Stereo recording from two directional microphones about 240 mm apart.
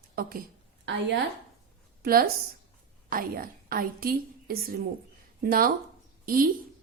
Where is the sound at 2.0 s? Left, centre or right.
Right.